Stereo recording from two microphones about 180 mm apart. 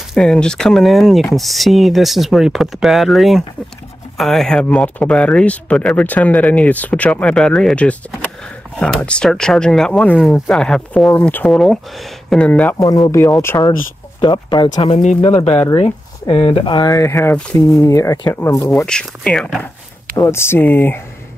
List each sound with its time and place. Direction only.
0.1 s speech: 5° left (ahead or behind)
12.7 s speech: 20° left (ahead or behind)
18.9 s speech: 5° left (ahead or behind)